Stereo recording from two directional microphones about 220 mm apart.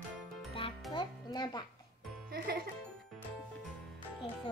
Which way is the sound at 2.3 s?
45° right (ahead or behind).